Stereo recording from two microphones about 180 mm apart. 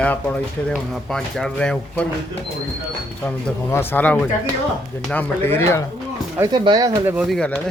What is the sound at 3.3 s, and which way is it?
Speech, 10° left (ahead or behind).